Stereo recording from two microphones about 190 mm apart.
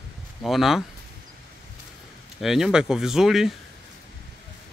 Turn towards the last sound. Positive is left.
turn(degrees=0)  # may be behind; listen again after turning